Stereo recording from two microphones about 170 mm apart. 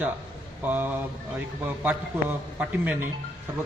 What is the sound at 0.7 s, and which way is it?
Speech, 10° right (ahead or behind).